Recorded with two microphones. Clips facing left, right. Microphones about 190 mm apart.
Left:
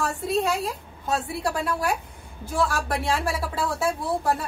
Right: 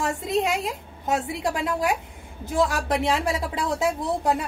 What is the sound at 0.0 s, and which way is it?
A woman's voice, 20° right (ahead or behind).